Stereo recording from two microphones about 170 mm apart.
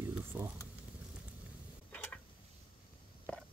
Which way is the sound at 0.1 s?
10° right (ahead or behind).